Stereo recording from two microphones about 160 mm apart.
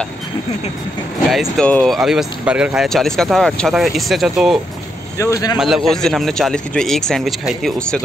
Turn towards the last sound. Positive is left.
turn(degrees=0)  # may be behind; listen again after turning